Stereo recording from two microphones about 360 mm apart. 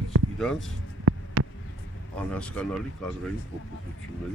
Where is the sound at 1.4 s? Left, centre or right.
Right.